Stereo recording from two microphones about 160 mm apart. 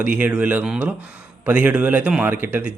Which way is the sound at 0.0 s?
10° right (ahead or behind).